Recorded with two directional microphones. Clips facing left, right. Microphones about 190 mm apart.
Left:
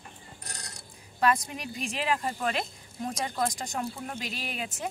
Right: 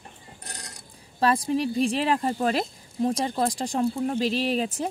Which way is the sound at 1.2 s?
30° right (ahead or behind).